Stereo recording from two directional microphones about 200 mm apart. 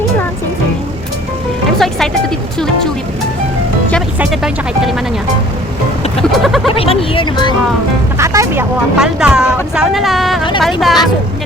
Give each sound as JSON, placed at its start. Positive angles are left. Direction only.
{"t": 4.2, "sound": "speech", "side_deg": -5}
{"t": 6.3, "sound": "speech", "side_deg": 0}
{"t": 6.7, "sound": "speech", "side_deg": 30}
{"t": 8.2, "sound": "speech", "side_deg": -15}
{"t": 9.0, "sound": "speech", "side_deg": -5}